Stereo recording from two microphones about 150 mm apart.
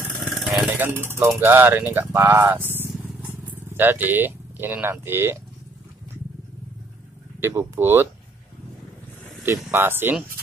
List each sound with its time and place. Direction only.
0.2 s vehicle: centre (ahead or behind)
0.7 s speech: 15° right (ahead or behind)
2.9 s vehicle: 10° right (ahead or behind)
7.3 s speech: 15° right (ahead or behind)
9.4 s speech: 15° right (ahead or behind)